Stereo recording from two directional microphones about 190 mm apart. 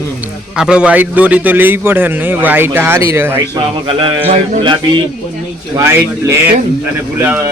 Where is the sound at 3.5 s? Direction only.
25° right (ahead or behind).